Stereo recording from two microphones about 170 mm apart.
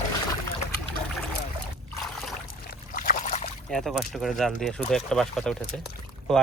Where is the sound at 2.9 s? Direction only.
55° left (ahead or behind).